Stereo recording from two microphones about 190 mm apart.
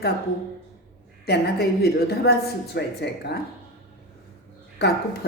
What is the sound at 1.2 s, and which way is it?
A woman's voice, 60° left (ahead or behind).